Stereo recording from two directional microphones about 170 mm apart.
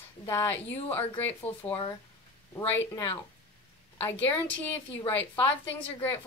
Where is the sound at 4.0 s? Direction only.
10° left (ahead or behind).